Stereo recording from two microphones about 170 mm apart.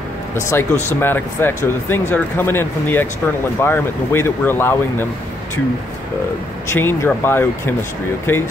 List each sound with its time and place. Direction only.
0.4 s speech: 15° left (ahead or behind)
6.7 s speech: 15° left (ahead or behind)